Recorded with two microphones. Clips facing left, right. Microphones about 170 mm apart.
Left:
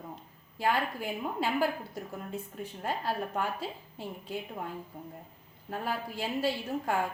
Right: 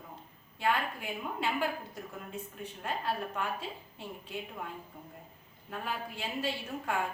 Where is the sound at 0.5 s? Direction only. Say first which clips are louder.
Left 2 dB; 35° left (ahead or behind).